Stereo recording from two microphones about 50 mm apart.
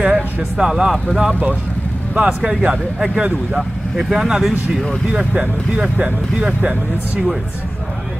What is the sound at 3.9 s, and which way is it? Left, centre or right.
Speech, centre.